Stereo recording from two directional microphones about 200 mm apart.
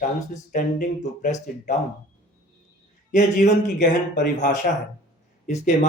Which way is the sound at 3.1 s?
40° left (ahead or behind).